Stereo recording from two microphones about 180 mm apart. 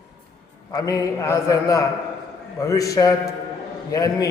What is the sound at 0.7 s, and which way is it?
A man's voice, 20° left (ahead or behind).